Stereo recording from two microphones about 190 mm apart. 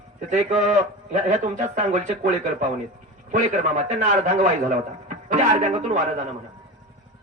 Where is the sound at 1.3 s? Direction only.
40° right (ahead or behind).